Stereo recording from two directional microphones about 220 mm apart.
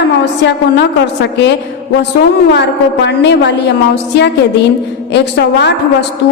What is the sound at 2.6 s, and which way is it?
Speech, 50° left (ahead or behind).